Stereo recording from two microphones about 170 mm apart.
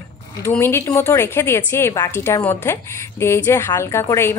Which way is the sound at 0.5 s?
15° left (ahead or behind).